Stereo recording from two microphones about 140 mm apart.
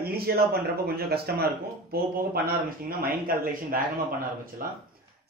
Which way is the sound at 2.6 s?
85° right.